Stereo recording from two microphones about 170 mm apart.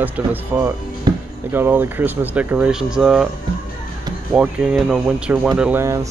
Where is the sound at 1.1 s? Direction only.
25° right (ahead or behind).